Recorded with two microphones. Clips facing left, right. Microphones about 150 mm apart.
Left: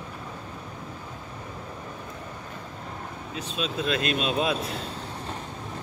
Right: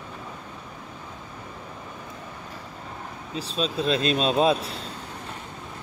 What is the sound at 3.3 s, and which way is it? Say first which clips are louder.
Speech: right 3 dB; 35° right (ahead or behind).